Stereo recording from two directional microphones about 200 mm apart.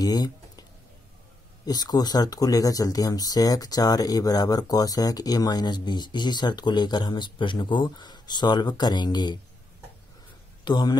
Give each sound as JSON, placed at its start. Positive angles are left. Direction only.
{"t": 0.0, "sound": "a sound", "side_deg": 20}
{"t": 1.7, "sound": "speech", "side_deg": 20}
{"t": 10.6, "sound": "speech", "side_deg": 20}